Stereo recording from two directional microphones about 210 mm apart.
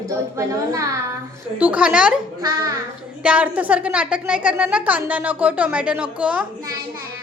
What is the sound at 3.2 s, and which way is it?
A woman's voice, 5° right (ahead or behind).